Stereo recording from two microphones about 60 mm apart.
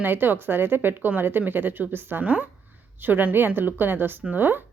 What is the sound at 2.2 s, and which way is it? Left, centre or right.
Speech, right.